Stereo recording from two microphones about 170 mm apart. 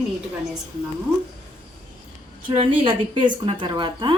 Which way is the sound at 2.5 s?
30° right (ahead or behind).